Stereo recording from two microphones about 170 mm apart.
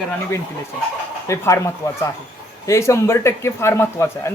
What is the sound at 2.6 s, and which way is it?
Speech, 15° left (ahead or behind).